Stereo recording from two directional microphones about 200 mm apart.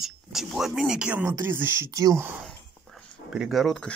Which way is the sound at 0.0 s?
Centre (ahead or behind).